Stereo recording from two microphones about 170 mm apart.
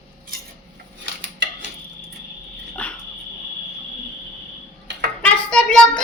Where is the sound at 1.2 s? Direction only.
90° right.